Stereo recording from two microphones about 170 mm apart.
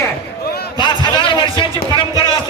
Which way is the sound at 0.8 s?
25° left (ahead or behind).